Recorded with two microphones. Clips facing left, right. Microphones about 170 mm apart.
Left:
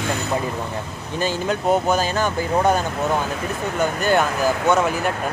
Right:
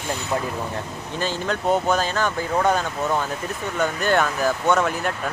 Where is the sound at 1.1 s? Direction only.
10° left (ahead or behind).